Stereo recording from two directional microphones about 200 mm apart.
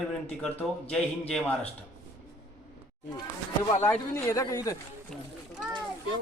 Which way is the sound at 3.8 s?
15° left (ahead or behind).